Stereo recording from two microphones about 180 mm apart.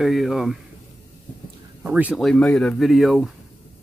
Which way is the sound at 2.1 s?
5° left (ahead or behind).